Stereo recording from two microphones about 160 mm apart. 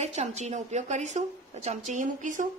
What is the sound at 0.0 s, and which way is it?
A woman's voice, 45° right (ahead or behind).